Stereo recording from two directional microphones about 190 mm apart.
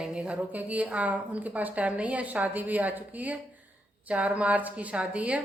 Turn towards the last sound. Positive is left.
turn(degrees=-5)  # may be behind; listen again after turning